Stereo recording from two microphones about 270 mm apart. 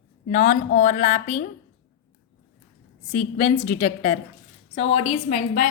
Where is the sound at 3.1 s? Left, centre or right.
Left.